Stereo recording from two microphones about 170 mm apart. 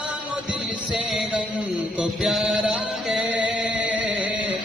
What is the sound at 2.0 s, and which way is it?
Chant, 5° right (ahead or behind).